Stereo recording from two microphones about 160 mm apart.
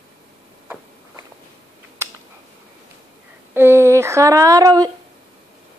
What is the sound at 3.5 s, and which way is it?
Speech, 15° right (ahead or behind).